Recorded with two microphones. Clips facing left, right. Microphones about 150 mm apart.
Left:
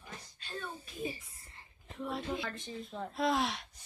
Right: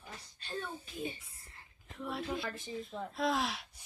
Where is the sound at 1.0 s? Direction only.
5° left (ahead or behind).